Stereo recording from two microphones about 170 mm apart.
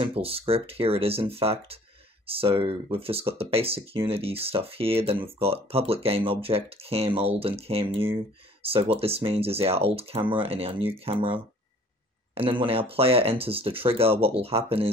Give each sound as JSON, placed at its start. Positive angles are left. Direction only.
{"t": 0.0, "sound": "speech", "side_deg": -35}